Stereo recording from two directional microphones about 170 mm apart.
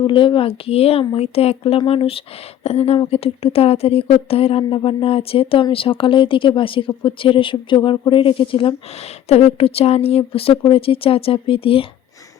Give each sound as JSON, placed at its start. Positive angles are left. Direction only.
{"t": 0.1, "sound": "speech", "side_deg": 30}